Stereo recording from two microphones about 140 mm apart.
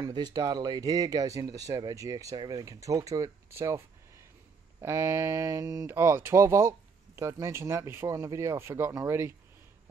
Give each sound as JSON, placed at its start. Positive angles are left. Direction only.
{"t": 0.0, "sound": "speech", "side_deg": -30}